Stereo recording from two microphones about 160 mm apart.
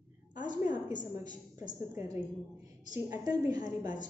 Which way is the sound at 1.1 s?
25° right (ahead or behind).